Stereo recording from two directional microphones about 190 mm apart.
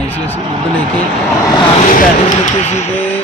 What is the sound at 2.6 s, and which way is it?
Speech, 35° left (ahead or behind).